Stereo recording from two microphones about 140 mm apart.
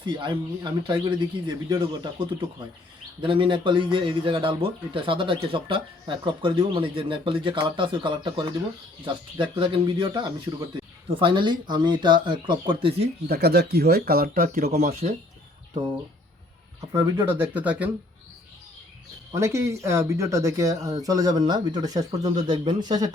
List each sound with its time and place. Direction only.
0.0 s a man's voice: 30° right (ahead or behind)
13.9 s speech: 90° right
14.7 s speech: 60° right (ahead or behind)
16.9 s speech: 20° right (ahead or behind)
19.3 s speech: 20° right (ahead or behind)